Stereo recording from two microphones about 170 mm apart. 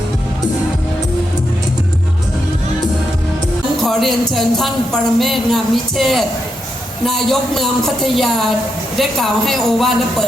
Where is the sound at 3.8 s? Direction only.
Centre (ahead or behind).